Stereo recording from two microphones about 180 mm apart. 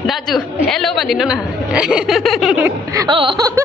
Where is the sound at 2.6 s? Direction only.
20° right (ahead or behind).